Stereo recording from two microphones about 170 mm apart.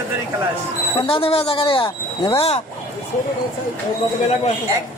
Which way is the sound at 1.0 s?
30° left (ahead or behind).